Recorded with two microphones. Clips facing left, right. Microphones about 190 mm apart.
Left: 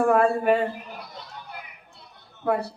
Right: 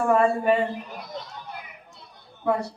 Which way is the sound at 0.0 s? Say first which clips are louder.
Left 1 dB; 60° left (ahead or behind).